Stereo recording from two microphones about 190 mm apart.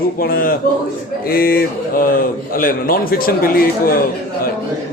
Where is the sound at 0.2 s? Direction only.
50° left (ahead or behind).